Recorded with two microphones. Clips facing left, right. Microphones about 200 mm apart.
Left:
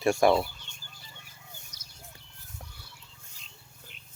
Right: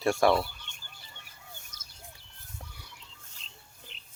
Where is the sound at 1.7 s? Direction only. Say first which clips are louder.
Right 1 dB; 50° right (ahead or behind).